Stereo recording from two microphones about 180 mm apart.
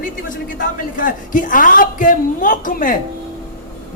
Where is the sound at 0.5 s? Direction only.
50° left (ahead or behind).